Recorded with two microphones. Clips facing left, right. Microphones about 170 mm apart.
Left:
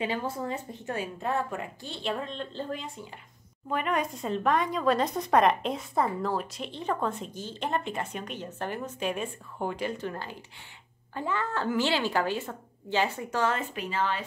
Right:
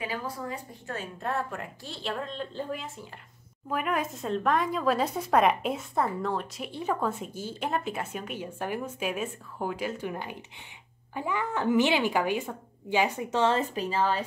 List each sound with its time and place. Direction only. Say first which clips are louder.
0.0 s speech: left 3 dB; 25° left (ahead or behind)
0.9 s a woman's voice: left 1 dB; 5° left (ahead or behind); by 14.2 s 35° right (ahead or behind)